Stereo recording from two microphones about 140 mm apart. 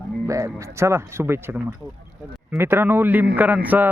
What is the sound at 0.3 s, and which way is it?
A man's voice, 20° right (ahead or behind).